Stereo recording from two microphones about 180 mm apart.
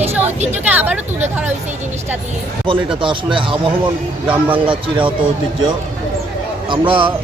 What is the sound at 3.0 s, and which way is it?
Speech, 25° right (ahead or behind).